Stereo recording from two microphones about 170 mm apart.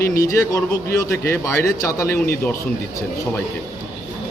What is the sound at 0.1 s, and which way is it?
A man's voice, 20° left (ahead or behind).